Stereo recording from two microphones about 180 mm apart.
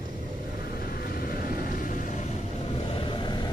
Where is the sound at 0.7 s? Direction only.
55° left (ahead or behind); by 3.5 s 25° left (ahead or behind).